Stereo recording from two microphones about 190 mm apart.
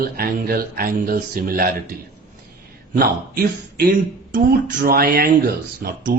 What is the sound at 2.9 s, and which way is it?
Speech, 50° right (ahead or behind).